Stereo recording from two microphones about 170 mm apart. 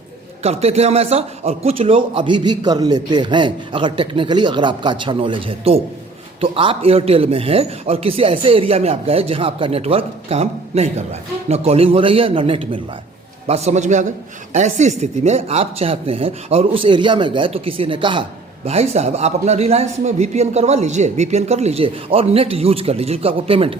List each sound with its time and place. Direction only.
0.4 s a man's voice: 40° right (ahead or behind)